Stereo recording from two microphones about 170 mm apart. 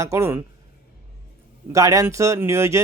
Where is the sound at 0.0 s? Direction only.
15° right (ahead or behind).